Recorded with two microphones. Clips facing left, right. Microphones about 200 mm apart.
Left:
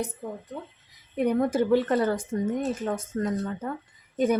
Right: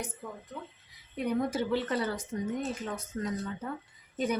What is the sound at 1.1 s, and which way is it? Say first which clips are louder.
Speech: left 6 dB; 55° left (ahead or behind).